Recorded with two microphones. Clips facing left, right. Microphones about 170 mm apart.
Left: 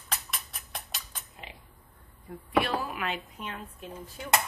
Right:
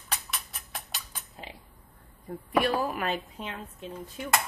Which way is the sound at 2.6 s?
40° right (ahead or behind).